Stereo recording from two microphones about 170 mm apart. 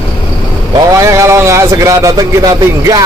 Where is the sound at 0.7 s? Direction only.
20° right (ahead or behind).